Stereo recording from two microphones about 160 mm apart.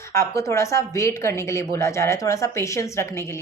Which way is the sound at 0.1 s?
20° left (ahead or behind).